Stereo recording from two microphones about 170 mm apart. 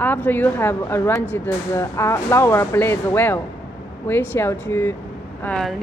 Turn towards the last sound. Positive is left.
turn(degrees=5)  # may be behind; listen again after turning